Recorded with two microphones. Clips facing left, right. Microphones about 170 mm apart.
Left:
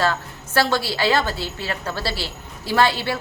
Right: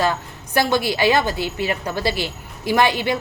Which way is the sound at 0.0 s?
15° right (ahead or behind).